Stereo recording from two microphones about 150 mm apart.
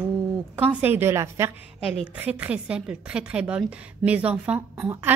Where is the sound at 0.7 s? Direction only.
10° right (ahead or behind).